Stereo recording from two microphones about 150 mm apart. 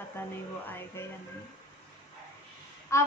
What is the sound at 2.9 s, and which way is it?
Speech, 20° left (ahead or behind).